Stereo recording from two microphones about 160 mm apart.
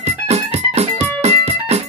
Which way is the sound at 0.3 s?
40° right (ahead or behind).